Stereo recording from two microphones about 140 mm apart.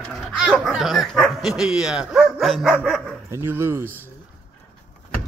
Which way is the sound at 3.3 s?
20° right (ahead or behind).